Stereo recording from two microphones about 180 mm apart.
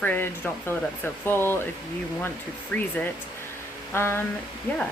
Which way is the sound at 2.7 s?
10° left (ahead or behind).